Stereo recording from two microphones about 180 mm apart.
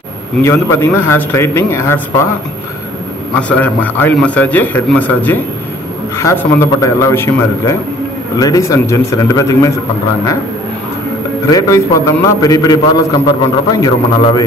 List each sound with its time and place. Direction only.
0.4 s a man's voice: 15° left (ahead or behind)
3.3 s a man's voice: 10° left (ahead or behind)
11.4 s a man's voice: 20° left (ahead or behind)